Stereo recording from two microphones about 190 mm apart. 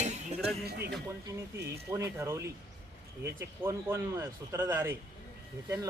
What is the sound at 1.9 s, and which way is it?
Speech, 15° right (ahead or behind).